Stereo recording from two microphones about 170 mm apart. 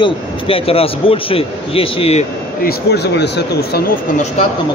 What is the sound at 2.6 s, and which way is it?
Speech, 70° left (ahead or behind).